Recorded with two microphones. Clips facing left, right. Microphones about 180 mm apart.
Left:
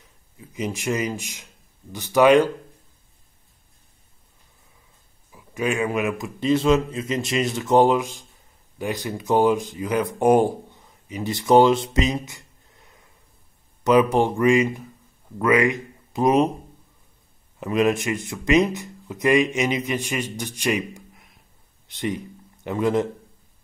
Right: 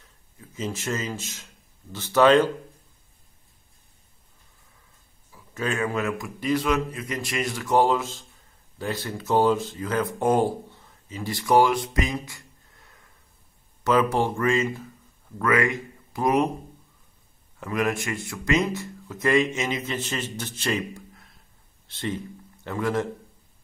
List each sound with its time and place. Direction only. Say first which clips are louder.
0.4 s speech: left 3 dB; 15° left (ahead or behind)
5.3 s a man's voice: left 4 dB; 15° left (ahead or behind)
17.6 s speech: left 5 dB; 20° left (ahead or behind)